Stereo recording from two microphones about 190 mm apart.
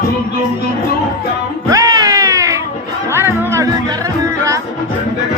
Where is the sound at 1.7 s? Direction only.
20° right (ahead or behind).